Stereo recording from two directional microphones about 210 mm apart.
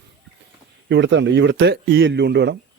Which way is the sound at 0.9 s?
60° right (ahead or behind).